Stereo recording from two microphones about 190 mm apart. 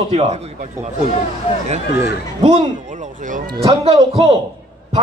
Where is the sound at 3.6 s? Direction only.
30° right (ahead or behind).